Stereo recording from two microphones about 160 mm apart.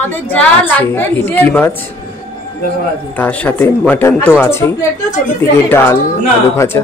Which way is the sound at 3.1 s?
10° left (ahead or behind).